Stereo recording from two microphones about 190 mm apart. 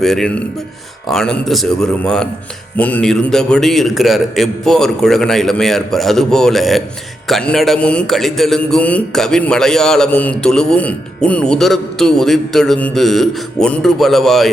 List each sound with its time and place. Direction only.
0.0 s a man's voice: centre (ahead or behind)